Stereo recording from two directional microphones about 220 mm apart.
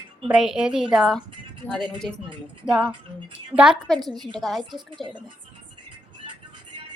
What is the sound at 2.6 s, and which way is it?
A woman's voice, 5° right (ahead or behind).